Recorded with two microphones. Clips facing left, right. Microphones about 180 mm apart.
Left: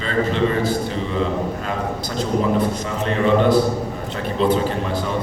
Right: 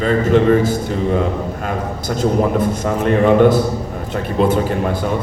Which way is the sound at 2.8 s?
50° right (ahead or behind).